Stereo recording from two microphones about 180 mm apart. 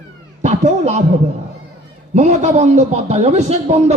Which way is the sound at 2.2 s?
40° right (ahead or behind).